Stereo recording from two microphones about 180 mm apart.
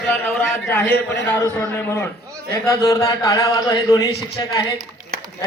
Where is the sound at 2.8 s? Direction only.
20° left (ahead or behind).